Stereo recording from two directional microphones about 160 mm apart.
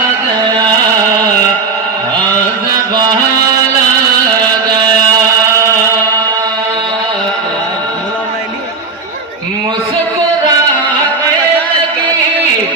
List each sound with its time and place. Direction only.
4.4 s chant: 25° right (ahead or behind)